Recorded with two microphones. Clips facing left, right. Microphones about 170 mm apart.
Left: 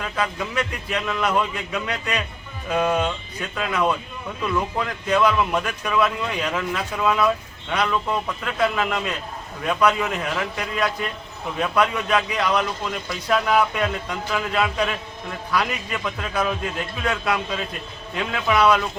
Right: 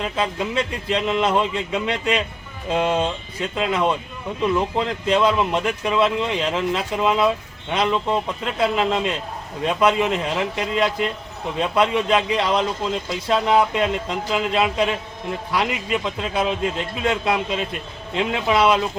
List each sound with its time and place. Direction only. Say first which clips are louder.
0.0 s speech: right 3 dB; 25° right (ahead or behind)